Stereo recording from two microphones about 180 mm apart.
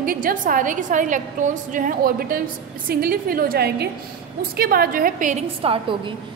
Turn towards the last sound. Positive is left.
turn(degrees=-30)  # may be behind; listen again after turning